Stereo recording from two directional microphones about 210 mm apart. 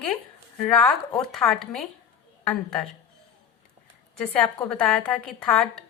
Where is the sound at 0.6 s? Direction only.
5° left (ahead or behind).